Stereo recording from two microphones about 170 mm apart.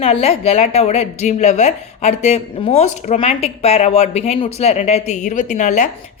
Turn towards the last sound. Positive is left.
turn(degrees=45)  # may be behind; listen again after turning